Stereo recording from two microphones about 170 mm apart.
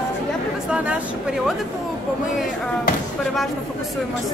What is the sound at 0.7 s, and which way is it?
Speech, 5° right (ahead or behind).